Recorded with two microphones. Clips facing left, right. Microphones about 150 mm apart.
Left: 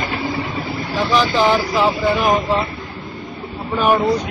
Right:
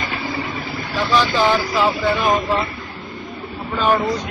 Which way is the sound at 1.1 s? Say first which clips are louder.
Left 1 dB; 15° left (ahead or behind).